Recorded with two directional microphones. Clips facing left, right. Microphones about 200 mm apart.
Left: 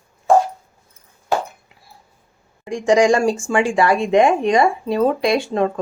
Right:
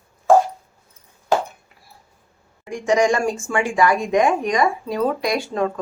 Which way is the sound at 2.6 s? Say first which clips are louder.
Left 3 dB; 30° left (ahead or behind).